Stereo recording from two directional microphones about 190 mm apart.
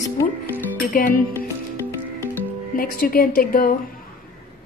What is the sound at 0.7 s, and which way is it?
Speech, 45° left (ahead or behind).